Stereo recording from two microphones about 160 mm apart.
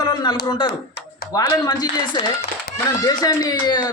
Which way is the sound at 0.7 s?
85° left.